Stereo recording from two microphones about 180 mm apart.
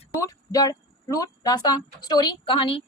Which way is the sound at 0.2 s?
20° left (ahead or behind).